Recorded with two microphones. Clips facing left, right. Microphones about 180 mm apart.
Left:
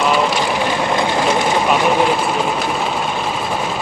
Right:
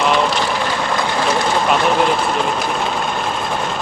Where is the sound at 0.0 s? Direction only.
5° left (ahead or behind).